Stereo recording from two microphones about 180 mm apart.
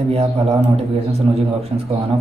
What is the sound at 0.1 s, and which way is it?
Speech, 35° right (ahead or behind).